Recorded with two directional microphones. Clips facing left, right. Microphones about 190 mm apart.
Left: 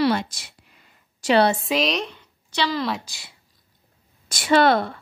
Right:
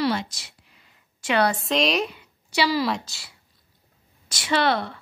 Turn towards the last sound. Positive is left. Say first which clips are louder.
# left 5 dB
turn(degrees=45)  # may be behind; listen again after turning